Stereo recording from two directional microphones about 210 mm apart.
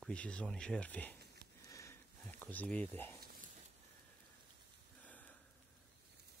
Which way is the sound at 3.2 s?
45° right (ahead or behind).